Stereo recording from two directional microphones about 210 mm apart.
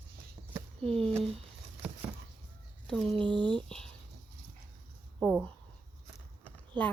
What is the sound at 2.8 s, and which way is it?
Speech, centre (ahead or behind).